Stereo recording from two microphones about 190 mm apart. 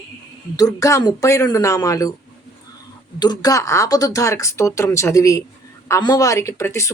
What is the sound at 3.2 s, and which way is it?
Speech, 20° left (ahead or behind).